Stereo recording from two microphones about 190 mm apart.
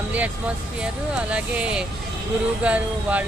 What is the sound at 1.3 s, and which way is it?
Speech, 5° right (ahead or behind).